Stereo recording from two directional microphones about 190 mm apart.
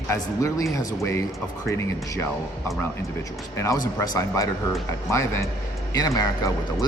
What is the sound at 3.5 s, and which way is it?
Speech, 15° left (ahead or behind).